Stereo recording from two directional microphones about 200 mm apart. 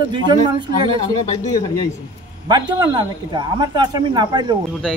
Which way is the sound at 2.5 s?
20° right (ahead or behind).